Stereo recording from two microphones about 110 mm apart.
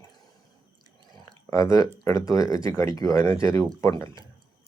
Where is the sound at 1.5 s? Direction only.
30° left (ahead or behind).